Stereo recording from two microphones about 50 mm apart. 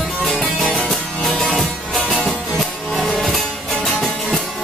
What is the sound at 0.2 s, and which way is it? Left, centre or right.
Music, centre.